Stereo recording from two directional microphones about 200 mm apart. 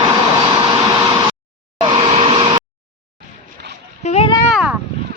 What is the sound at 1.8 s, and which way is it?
Vehicle, 25° right (ahead or behind).